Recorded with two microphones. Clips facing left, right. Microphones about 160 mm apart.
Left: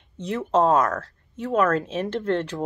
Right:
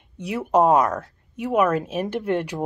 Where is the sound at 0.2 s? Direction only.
10° right (ahead or behind).